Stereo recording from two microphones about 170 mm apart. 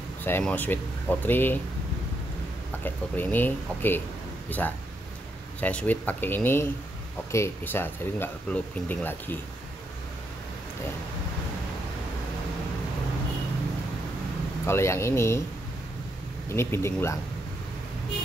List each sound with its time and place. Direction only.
0.2 s speech: 10° left (ahead or behind)
2.8 s speech: 10° left (ahead or behind)
14.7 s speech: 15° left (ahead or behind)
16.4 s speech: 15° left (ahead or behind)